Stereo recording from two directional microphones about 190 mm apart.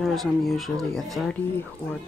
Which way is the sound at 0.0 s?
Centre (ahead or behind).